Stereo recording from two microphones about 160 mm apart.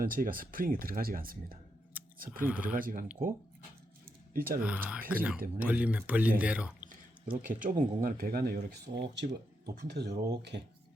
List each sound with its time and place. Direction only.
0.0 s speech: 65° right (ahead or behind)
2.4 s speech: 10° right (ahead or behind)
2.7 s speech: 60° right (ahead or behind)
4.4 s speech: 65° right (ahead or behind)
4.6 s speech: 10° right (ahead or behind)
7.4 s speech: 55° right (ahead or behind)
8.9 s speech: 85° right